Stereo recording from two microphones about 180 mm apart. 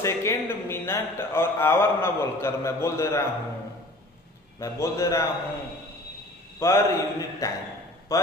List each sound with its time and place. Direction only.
0.0 s speech: 15° left (ahead or behind)
4.6 s speech: 15° left (ahead or behind)
6.6 s a man's voice: 15° left (ahead or behind)